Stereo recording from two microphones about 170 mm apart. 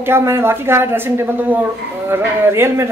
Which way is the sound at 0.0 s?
15° right (ahead or behind).